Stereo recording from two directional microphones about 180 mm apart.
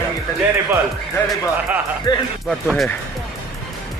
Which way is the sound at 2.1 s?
20° left (ahead or behind).